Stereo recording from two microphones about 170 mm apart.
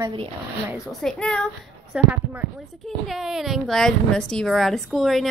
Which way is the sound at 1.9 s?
10° right (ahead or behind).